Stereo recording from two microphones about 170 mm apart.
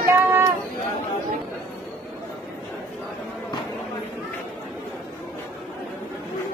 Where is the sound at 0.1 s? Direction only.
15° right (ahead or behind).